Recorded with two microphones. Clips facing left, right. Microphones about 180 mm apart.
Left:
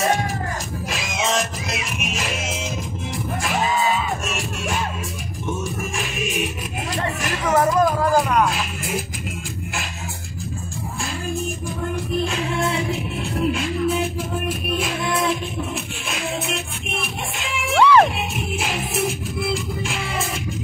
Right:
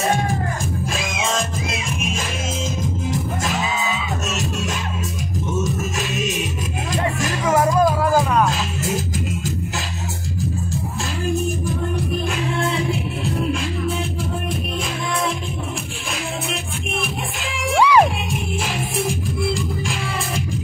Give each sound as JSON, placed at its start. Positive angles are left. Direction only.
{"t": 3.7, "sound": "music", "side_deg": -85}
{"t": 7.8, "sound": "music", "side_deg": -5}
{"t": 17.7, "sound": "music", "side_deg": -10}